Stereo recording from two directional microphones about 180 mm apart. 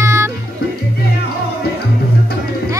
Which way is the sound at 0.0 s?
15° right (ahead or behind).